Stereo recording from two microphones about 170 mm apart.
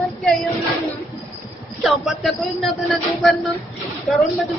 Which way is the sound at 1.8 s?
Centre (ahead or behind).